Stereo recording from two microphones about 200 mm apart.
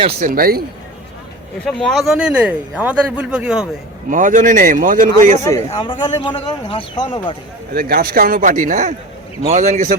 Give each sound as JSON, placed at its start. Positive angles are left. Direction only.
{"t": 0.0, "sound": "speech", "side_deg": -40}
{"t": 1.6, "sound": "speech", "side_deg": 0}
{"t": 4.1, "sound": "speech", "side_deg": -40}
{"t": 5.7, "sound": "speech", "side_deg": 25}
{"t": 7.7, "sound": "speech", "side_deg": -45}